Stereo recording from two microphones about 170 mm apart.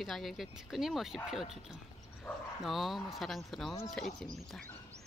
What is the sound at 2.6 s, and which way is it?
Speech, centre (ahead or behind).